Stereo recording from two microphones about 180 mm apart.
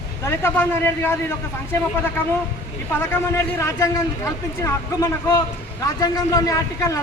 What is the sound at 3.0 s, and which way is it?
A man's voice, 15° left (ahead or behind).